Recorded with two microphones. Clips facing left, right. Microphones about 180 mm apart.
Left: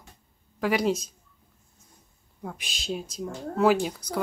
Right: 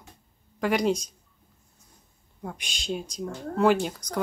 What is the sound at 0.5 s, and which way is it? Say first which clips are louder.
Speech: even; centre (ahead or behind).